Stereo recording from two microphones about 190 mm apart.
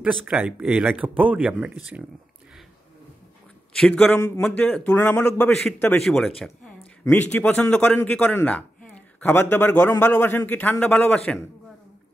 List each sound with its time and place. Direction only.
0.0 s a man's voice: 5° right (ahead or behind)
3.7 s a man's voice: 5° left (ahead or behind)